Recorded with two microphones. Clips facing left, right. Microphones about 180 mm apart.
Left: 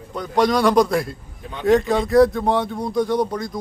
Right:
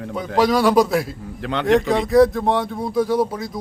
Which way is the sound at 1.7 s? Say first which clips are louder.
Left 1 dB; centre (ahead or behind).